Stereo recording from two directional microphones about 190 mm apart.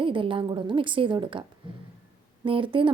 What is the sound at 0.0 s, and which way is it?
Speech, 25° right (ahead or behind).